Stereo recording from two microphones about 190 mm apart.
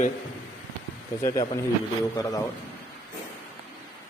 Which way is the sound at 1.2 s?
15° left (ahead or behind).